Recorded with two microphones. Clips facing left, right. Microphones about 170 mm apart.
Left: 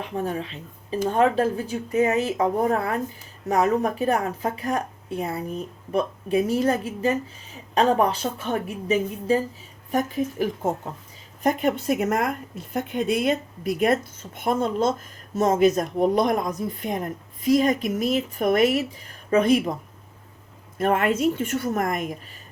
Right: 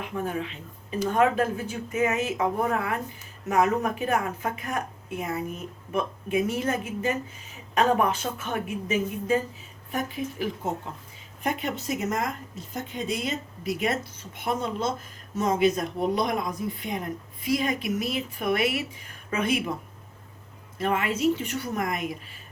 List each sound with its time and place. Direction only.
0.0 s speech: 35° left (ahead or behind)
20.7 s speech: 50° left (ahead or behind)